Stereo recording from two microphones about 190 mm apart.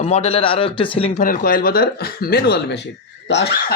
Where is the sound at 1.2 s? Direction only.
50° left (ahead or behind).